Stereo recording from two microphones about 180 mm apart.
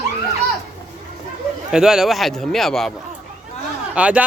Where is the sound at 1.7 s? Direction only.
5° right (ahead or behind).